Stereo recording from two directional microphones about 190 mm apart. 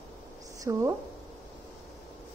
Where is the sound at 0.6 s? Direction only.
15° right (ahead or behind).